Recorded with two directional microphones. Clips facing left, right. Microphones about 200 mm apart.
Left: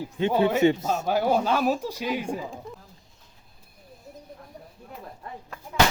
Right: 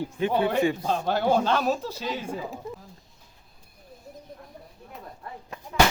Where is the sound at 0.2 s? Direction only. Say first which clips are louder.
Left 3 dB; 25° left (ahead or behind).